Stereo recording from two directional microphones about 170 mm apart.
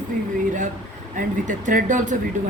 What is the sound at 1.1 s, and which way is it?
A woman's voice, 50° right (ahead or behind).